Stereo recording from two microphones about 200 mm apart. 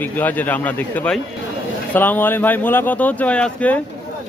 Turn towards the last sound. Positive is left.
turn(degrees=5)  # may be behind; listen again after turning